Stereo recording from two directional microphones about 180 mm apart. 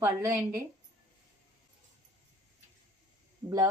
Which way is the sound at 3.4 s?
20° right (ahead or behind).